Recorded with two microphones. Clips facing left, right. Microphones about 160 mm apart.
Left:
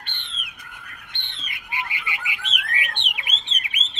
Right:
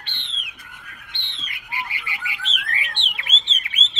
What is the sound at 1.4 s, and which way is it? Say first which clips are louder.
Bird: even; 20° left (ahead or behind).